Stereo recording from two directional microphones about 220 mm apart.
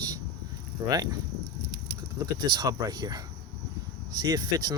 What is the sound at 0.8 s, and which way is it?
Speech, 15° right (ahead or behind).